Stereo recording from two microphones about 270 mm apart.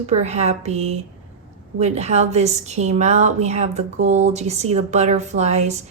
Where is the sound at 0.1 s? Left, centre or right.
Right.